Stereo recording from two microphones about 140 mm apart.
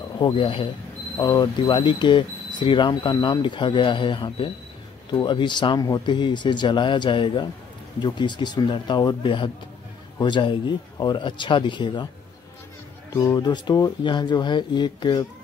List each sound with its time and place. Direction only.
0.2 s speech: 40° left (ahead or behind)
1.1 s speech: 25° left (ahead or behind)
13.1 s speech: 25° left (ahead or behind)